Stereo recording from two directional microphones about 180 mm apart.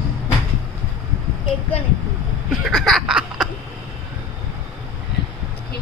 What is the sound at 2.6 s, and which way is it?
Snicker, centre (ahead or behind).